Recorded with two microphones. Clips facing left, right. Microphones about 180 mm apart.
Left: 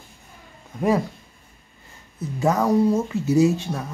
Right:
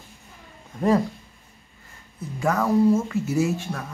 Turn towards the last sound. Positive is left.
turn(degrees=20)  # may be behind; listen again after turning